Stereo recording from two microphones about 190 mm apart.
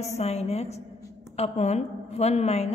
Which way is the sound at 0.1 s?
35° left (ahead or behind).